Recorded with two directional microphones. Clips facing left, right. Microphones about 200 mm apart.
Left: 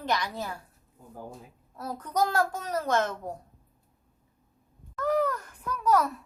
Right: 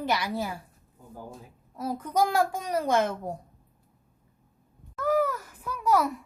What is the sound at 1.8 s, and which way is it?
A child's voice, 10° right (ahead or behind).